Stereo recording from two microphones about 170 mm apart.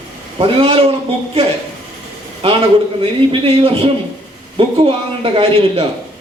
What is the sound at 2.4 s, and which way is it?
A man's voice, 35° right (ahead or behind).